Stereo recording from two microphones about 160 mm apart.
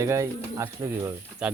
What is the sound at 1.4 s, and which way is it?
Speech, 5° right (ahead or behind).